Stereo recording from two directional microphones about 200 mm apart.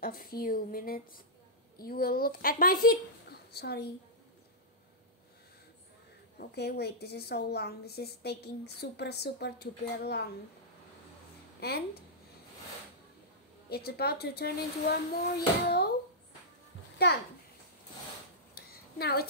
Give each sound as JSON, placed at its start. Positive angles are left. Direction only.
{"t": 0.0, "sound": "a woman's voice", "side_deg": 45}
{"t": 6.3, "sound": "a woman's voice", "side_deg": 55}
{"t": 13.7, "sound": "a woman's voice", "side_deg": 50}
{"t": 18.7, "sound": "a sound", "side_deg": 50}